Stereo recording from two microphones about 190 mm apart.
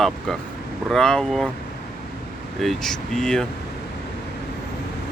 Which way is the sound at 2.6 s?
Centre (ahead or behind).